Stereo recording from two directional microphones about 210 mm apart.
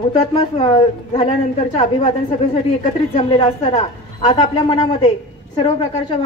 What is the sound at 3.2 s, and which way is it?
A woman's voice, 25° left (ahead or behind).